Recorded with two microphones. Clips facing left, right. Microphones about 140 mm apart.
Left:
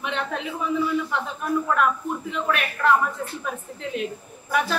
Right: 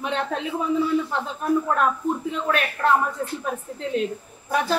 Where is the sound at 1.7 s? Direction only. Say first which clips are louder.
Right 1 dB; 35° right (ahead or behind).